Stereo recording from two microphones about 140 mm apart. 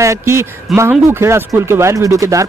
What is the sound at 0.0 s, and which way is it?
Speech, 20° right (ahead or behind).